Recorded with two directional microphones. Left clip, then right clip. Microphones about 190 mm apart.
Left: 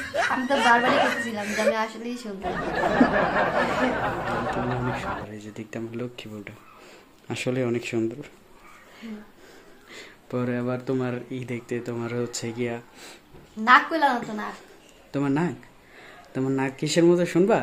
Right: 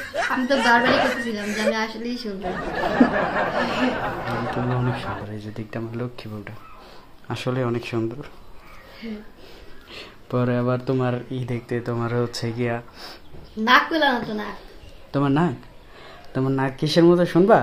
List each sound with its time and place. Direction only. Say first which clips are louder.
0.0 s speech: right 1 dB; centre (ahead or behind)
1.7 s speech: right 1 dB; 10° left (ahead or behind)
2.4 s speech: left 1 dB; centre (ahead or behind); by 6.5 s 20° left (ahead or behind)
7.2 s speech: right 1 dB; 30° left (ahead or behind)
9.8 s speech: right 4 dB; centre (ahead or behind)
15.1 s speech: right 4 dB; 5° left (ahead or behind)